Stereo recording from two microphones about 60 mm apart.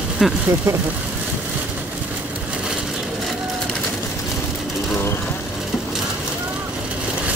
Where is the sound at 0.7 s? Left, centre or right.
Right.